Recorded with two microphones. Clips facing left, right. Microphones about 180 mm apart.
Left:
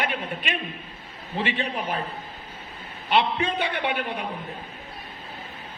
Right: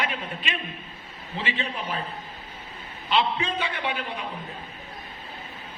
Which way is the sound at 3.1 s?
60° left (ahead or behind).